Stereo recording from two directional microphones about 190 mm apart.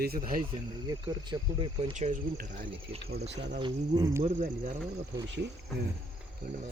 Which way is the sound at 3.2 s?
65° right (ahead or behind).